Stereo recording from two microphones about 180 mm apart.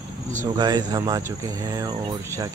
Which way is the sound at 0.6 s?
20° right (ahead or behind).